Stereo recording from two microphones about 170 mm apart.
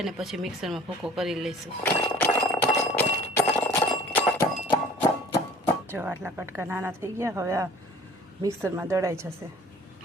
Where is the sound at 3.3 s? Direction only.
10° left (ahead or behind).